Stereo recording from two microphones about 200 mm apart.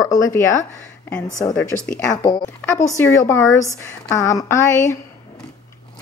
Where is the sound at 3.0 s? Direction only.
10° left (ahead or behind).